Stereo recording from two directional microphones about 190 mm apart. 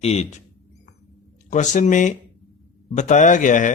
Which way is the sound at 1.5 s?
40° left (ahead or behind).